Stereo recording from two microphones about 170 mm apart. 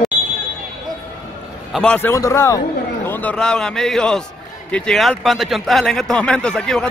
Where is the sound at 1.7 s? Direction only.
5° left (ahead or behind).